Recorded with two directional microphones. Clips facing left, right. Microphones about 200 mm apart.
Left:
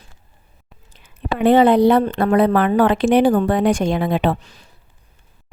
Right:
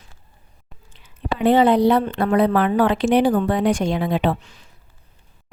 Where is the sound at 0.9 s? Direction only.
55° left (ahead or behind).